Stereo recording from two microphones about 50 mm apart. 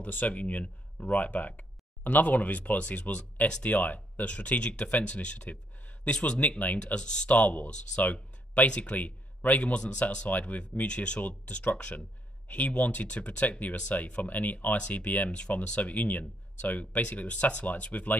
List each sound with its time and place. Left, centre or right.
0.0 s speech: left
7.2 s speech: left